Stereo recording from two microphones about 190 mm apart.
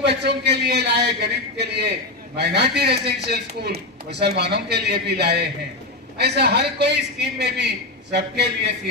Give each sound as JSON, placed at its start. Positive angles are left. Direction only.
{"t": 0.0, "sound": "a man's voice", "side_deg": -60}